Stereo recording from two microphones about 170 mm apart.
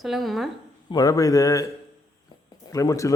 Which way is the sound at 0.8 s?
20° left (ahead or behind).